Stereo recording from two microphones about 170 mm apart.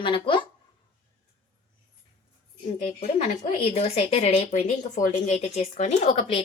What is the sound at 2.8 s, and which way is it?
A woman's voice, 40° left (ahead or behind).